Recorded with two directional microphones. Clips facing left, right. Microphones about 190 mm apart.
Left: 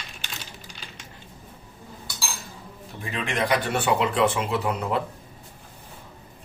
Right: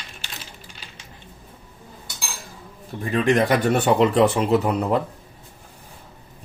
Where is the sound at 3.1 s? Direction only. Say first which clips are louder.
Right 7 dB; 45° right (ahead or behind).